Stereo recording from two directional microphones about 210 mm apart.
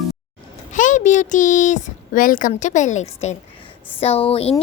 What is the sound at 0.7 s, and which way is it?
A woman's voice, 35° left (ahead or behind).